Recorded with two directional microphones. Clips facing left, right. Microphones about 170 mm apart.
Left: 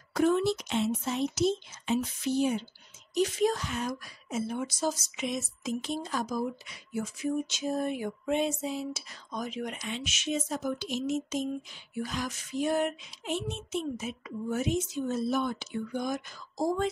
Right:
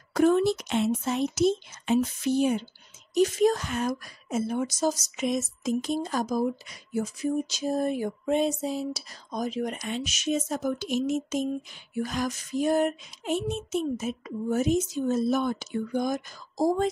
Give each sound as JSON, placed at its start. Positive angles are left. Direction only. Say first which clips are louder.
{"t": 0.1, "sound": "a woman's voice", "louder": "right 4 dB", "side_deg": -50}